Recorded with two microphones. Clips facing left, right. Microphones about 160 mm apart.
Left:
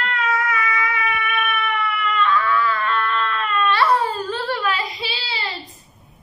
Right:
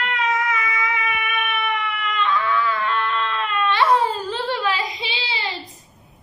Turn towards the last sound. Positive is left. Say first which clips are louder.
# right 1 dB
turn(degrees=-15)  # may be behind; listen again after turning